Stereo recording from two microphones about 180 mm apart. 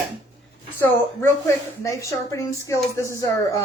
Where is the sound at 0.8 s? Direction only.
15° left (ahead or behind).